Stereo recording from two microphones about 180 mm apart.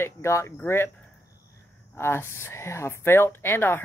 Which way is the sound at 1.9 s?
15° left (ahead or behind).